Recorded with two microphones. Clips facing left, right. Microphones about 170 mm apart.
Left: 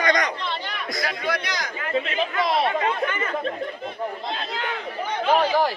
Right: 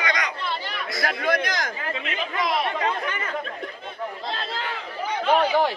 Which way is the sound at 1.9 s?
30° left (ahead or behind).